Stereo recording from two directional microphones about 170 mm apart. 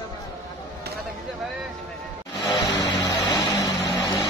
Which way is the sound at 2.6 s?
25° left (ahead or behind).